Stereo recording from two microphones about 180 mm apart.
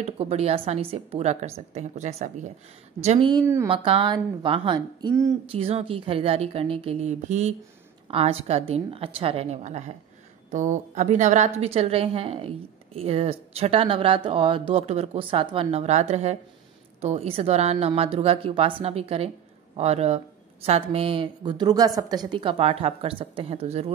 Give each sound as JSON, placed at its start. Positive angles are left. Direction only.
{"t": 0.0, "sound": "a woman's voice", "side_deg": -35}
{"t": 3.1, "sound": "a woman's voice", "side_deg": -25}
{"t": 5.5, "sound": "a woman's voice", "side_deg": -35}